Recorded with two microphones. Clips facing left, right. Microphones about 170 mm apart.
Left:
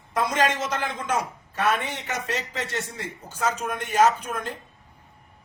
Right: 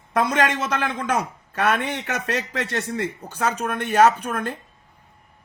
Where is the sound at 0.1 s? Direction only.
60° right (ahead or behind).